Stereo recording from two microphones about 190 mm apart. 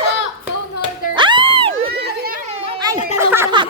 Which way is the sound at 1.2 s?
25° right (ahead or behind).